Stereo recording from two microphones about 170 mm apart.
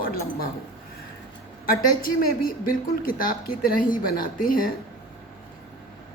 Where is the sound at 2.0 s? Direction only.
55° left (ahead or behind).